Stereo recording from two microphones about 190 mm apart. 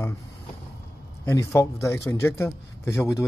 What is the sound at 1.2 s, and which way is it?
A man's voice, 15° left (ahead or behind).